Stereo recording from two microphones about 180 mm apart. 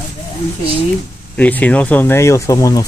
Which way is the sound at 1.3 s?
10° left (ahead or behind).